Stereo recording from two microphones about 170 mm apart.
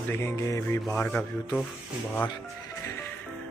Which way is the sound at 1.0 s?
5° left (ahead or behind).